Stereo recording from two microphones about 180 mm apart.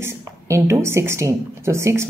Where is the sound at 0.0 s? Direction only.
15° right (ahead or behind).